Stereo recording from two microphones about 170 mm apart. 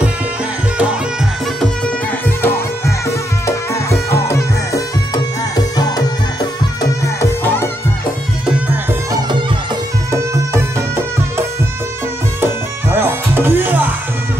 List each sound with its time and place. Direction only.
2.2 s music: 15° left (ahead or behind)
8.5 s music: 5° right (ahead or behind)
10.1 s music: 15° right (ahead or behind)